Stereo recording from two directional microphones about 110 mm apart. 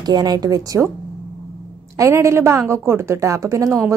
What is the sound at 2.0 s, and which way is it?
A woman's voice, 25° right (ahead or behind).